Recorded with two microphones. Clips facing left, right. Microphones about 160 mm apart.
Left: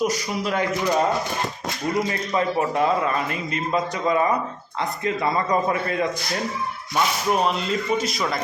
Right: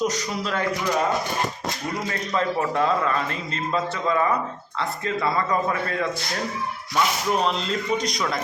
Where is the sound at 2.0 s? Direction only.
20° left (ahead or behind).